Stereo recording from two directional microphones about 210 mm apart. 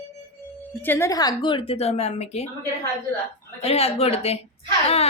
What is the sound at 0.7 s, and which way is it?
A woman's voice, 10° left (ahead or behind).